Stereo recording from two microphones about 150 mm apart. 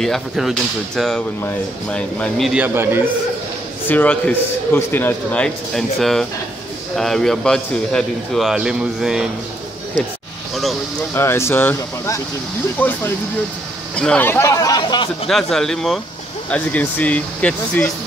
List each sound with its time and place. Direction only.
0.0 s a man's voice: centre (ahead or behind)
2.5 s a man's voice: 15° right (ahead or behind)
3.8 s a man's voice: 10° left (ahead or behind)
10.5 s a sound: centre (ahead or behind)
11.1 s a man's voice: 15° left (ahead or behind)
15.2 s a man's voice: centre (ahead or behind)